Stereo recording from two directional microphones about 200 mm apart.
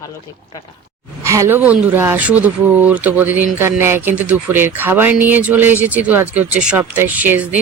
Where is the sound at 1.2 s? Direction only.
15° right (ahead or behind).